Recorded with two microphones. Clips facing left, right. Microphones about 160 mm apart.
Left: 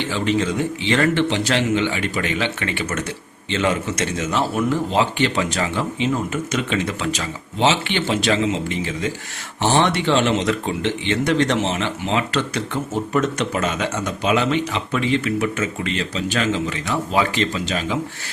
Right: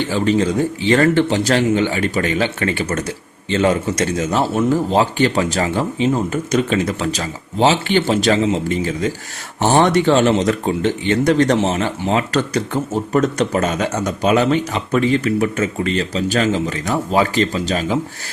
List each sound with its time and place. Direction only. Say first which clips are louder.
0.1 s speech: right 4 dB; 40° right (ahead or behind)